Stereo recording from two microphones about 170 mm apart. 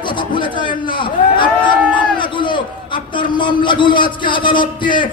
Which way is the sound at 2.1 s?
30° left (ahead or behind).